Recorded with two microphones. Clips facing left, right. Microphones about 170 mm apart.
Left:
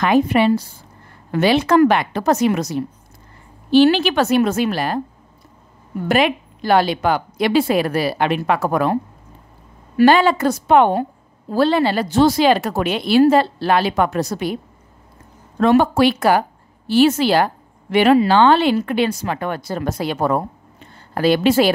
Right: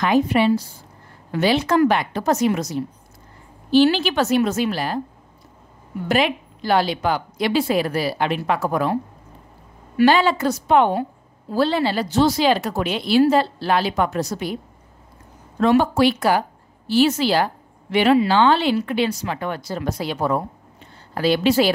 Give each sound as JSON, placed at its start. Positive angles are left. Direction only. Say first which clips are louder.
{"t": 0.0, "sound": "speech", "louder": "left 2 dB", "side_deg": 60}
{"t": 6.0, "sound": "speech", "louder": "left 3 dB", "side_deg": 55}
{"t": 9.9, "sound": "speech", "louder": "left 3 dB", "side_deg": 55}
{"t": 15.6, "sound": "a woman's voice", "louder": "left 2 dB", "side_deg": 55}